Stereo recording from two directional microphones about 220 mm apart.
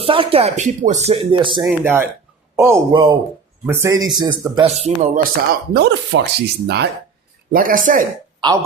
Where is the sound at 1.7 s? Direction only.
10° right (ahead or behind).